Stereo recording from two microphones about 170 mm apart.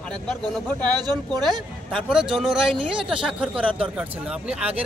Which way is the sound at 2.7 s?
30° right (ahead or behind).